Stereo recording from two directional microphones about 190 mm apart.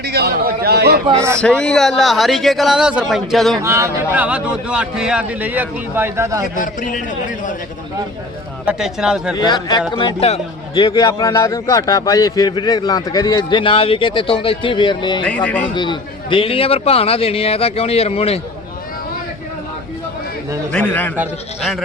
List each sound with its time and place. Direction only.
0.0 s a sound: 55° right (ahead or behind)
1.4 s speech: 5° left (ahead or behind)
3.6 s a man's voice: 15° right (ahead or behind)
6.6 s a man's voice: 45° left (ahead or behind)
8.6 s speech: 5° right (ahead or behind)
9.3 s a man's voice: 20° left (ahead or behind)
10.8 s a man's voice: 20° left (ahead or behind)
20.7 s a man's voice: 10° left (ahead or behind)